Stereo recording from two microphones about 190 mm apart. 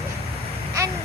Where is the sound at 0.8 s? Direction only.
15° right (ahead or behind).